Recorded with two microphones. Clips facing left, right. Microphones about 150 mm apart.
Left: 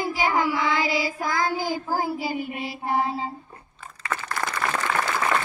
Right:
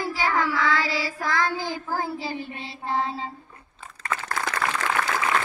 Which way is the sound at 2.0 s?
10° left (ahead or behind).